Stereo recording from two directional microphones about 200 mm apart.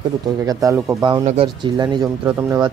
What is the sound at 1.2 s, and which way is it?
Speech, 25° right (ahead or behind).